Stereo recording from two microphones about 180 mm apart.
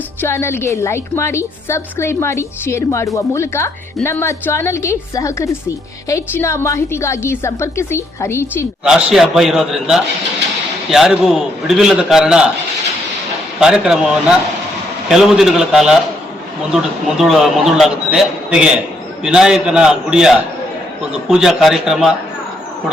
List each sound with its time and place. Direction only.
0.2 s a woman's voice: 15° left (ahead or behind)
8.8 s a man's voice: 5° right (ahead or behind)
13.6 s a man's voice: 5° right (ahead or behind)